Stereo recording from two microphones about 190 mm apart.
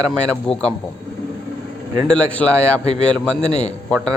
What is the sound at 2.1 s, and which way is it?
A man's voice, 5° left (ahead or behind).